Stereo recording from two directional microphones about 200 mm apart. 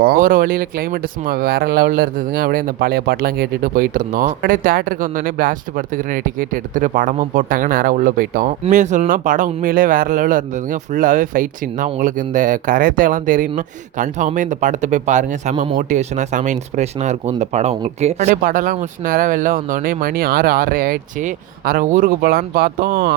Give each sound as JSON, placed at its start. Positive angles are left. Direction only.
{"t": 0.0, "sound": "speech", "side_deg": -45}
{"t": 15.5, "sound": "speech", "side_deg": -25}
{"t": 15.8, "sound": "speech", "side_deg": -35}